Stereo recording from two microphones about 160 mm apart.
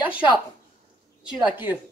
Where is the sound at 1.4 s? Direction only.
15° right (ahead or behind).